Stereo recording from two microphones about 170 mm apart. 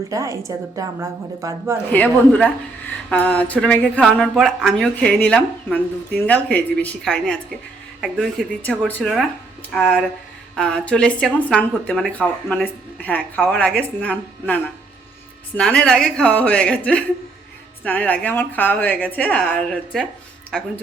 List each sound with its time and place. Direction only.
0.1 s a woman's voice: 20° right (ahead or behind)
1.9 s a woman's voice: 10° left (ahead or behind)